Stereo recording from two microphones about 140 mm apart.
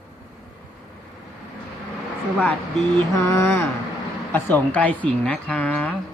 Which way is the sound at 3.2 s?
15° left (ahead or behind).